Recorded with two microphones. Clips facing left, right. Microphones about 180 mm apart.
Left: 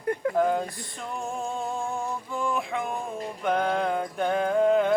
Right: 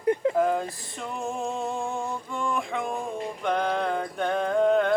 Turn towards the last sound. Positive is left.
turn(degrees=5)  # may be behind; listen again after turning